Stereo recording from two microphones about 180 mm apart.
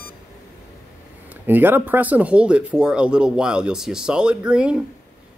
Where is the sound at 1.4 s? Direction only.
10° right (ahead or behind).